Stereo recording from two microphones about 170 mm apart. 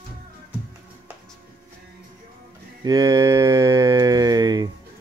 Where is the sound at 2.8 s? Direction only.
20° right (ahead or behind).